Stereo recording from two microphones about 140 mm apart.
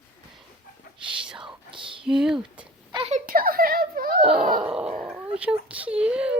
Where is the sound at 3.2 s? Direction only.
90° right.